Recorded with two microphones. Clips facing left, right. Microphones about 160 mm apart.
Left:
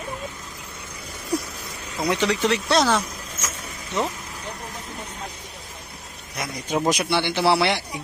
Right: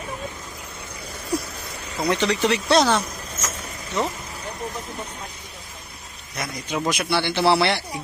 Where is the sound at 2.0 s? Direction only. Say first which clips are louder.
Right 1 dB; 5° left (ahead or behind).